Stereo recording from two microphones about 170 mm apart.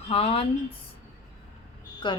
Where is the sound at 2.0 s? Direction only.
25° left (ahead or behind).